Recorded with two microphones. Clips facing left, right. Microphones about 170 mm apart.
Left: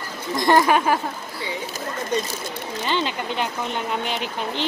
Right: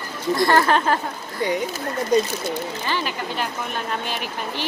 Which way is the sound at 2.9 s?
20° left (ahead or behind).